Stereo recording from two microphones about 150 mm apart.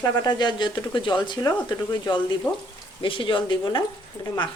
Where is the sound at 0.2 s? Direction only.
30° left (ahead or behind).